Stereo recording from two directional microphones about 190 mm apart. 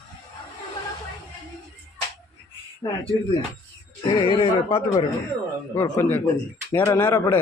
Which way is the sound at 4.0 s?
25° left (ahead or behind).